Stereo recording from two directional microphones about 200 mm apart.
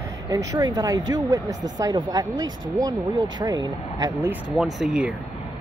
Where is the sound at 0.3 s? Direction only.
20° right (ahead or behind).